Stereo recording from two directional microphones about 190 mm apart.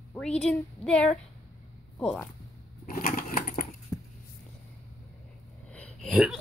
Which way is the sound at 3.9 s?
15° left (ahead or behind).